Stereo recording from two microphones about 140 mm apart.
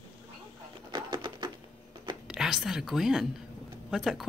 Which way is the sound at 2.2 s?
5° right (ahead or behind).